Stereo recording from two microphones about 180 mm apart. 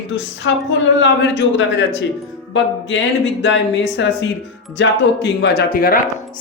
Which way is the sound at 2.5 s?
90° left.